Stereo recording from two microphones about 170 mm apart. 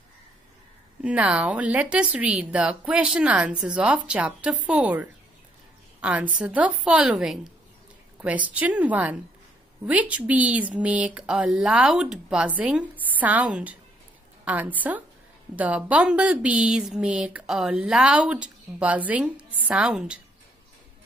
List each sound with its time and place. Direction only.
1.0 s a woman's voice: 5° right (ahead or behind)